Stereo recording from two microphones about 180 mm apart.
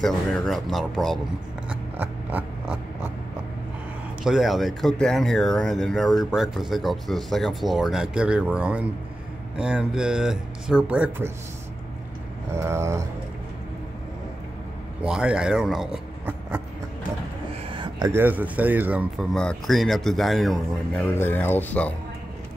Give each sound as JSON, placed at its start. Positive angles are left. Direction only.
{"t": 0.0, "sound": "speech", "side_deg": 0}
{"t": 1.7, "sound": "a sound", "side_deg": -10}
{"t": 4.2, "sound": "speech", "side_deg": 0}
{"t": 12.5, "sound": "speech", "side_deg": -15}
{"t": 15.0, "sound": "speech", "side_deg": -5}
{"t": 17.6, "sound": "a sound", "side_deg": -25}
{"t": 18.2, "sound": "speech", "side_deg": -10}
{"t": 19.3, "sound": "speech", "side_deg": 0}